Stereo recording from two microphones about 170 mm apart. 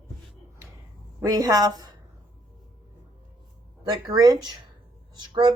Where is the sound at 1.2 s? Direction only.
20° right (ahead or behind).